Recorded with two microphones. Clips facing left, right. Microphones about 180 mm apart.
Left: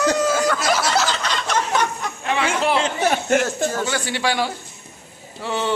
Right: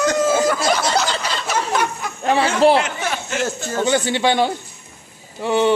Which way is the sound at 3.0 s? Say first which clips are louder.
Left 4 dB; 50° left (ahead or behind).